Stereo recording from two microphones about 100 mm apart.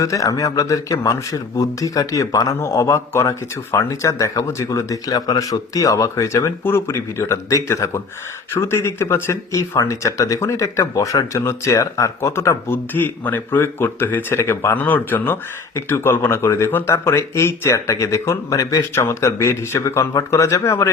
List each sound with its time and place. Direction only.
0.0 s speech: 35° left (ahead or behind)